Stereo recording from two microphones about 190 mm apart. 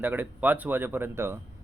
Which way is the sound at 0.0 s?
10° right (ahead or behind).